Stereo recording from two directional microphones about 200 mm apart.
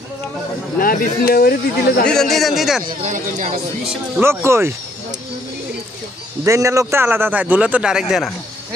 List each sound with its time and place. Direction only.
0.7 s speech: 45° left (ahead or behind)
2.0 s a man's voice: centre (ahead or behind)
2.8 s speech: 40° right (ahead or behind)
4.2 s a man's voice: 10° right (ahead or behind)
6.4 s a man's voice: 15° right (ahead or behind)